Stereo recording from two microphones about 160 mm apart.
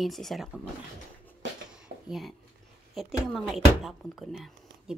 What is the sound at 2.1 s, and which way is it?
Speech, centre (ahead or behind).